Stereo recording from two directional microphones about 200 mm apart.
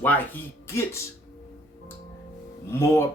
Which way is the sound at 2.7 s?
10° left (ahead or behind).